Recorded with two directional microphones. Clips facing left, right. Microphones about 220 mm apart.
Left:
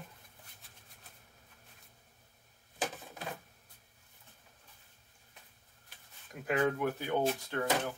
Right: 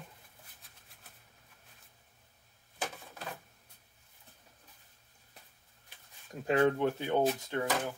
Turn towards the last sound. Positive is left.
turn(degrees=-20)  # may be behind; listen again after turning